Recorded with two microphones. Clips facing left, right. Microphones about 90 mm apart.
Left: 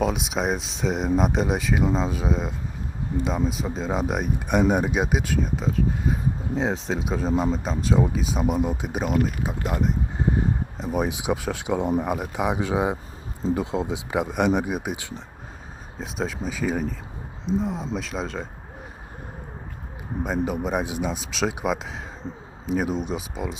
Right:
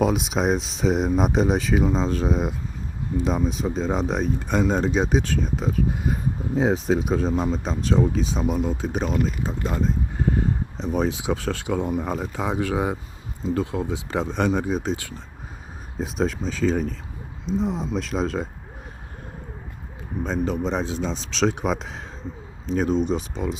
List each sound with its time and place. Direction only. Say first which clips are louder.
0.0 s speech: right 3 dB; centre (ahead or behind)
8.4 s speech: even; 20° left (ahead or behind)
10.2 s a sound: right 1 dB; 20° left (ahead or behind)
10.8 s speech: right 3 dB; 10° left (ahead or behind)
16.0 s speech: right 4 dB; centre (ahead or behind)
20.2 s speech: right 1 dB; 10° left (ahead or behind)